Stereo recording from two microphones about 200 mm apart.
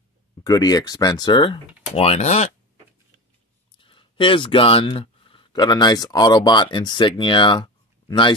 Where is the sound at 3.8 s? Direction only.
25° left (ahead or behind).